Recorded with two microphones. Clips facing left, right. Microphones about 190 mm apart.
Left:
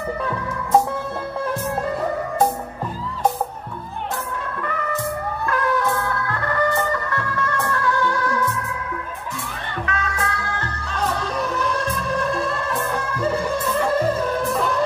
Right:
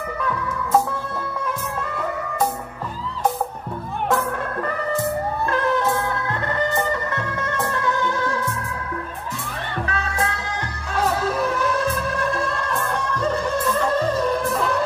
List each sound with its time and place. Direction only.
1.4 s music: 35° left (ahead or behind)
4.1 s music: 40° right (ahead or behind)
5.5 s music: 25° right (ahead or behind)
9.8 s music: 30° right (ahead or behind)
11.0 s music: 5° right (ahead or behind)